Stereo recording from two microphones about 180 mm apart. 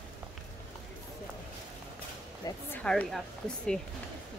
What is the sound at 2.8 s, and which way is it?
Speech, 5° left (ahead or behind).